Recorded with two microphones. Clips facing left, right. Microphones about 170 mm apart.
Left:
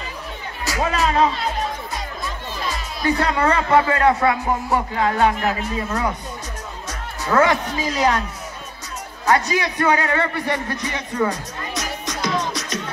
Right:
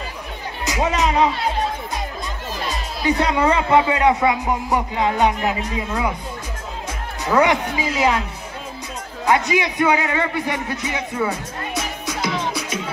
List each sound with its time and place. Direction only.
0.7 s speech: 20° right (ahead or behind)
2.7 s speech: 20° right (ahead or behind)
7.2 s speech: 15° right (ahead or behind)
9.2 s speech: 15° right (ahead or behind)
12.1 s music: 5° right (ahead or behind)